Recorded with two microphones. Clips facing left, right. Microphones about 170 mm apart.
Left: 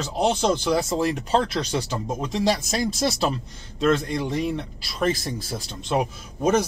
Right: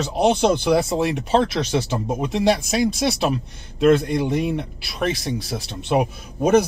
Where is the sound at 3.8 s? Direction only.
10° right (ahead or behind).